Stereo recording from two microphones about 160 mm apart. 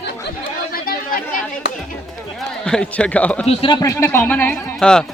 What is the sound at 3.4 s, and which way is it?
Speech, 40° left (ahead or behind).